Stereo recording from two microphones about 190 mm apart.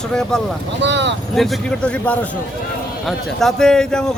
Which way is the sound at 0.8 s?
65° right (ahead or behind).